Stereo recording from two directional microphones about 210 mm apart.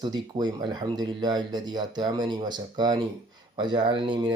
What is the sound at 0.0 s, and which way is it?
Speech, 20° right (ahead or behind).